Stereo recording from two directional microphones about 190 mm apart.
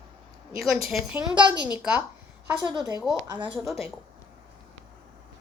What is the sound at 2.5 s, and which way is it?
A woman's voice, 20° right (ahead or behind).